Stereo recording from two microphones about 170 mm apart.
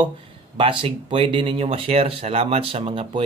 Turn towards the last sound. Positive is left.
turn(degrees=-35)  # may be behind; listen again after turning